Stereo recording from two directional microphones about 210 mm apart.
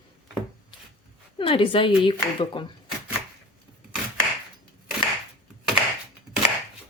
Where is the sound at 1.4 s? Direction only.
25° left (ahead or behind).